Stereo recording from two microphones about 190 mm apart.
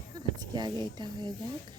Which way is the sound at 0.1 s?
20° right (ahead or behind).